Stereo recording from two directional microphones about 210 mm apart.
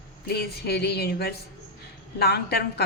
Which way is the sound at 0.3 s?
50° left (ahead or behind).